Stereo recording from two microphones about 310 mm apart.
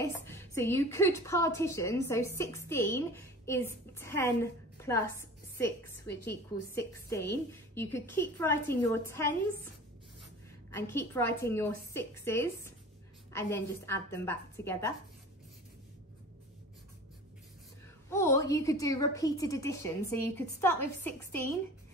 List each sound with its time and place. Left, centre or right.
0.0 s a woman's voice: centre
6.7 s a woman's voice: centre
10.7 s a woman's voice: centre
18.1 s a woman's voice: centre